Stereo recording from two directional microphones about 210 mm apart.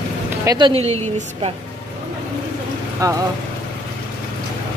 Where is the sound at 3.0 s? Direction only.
15° right (ahead or behind).